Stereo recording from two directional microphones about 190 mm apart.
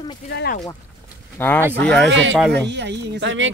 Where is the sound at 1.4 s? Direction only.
10° left (ahead or behind).